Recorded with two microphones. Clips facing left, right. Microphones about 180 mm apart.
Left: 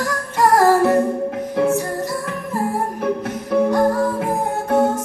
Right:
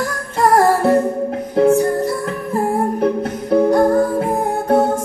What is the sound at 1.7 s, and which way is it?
Music, 60° right (ahead or behind).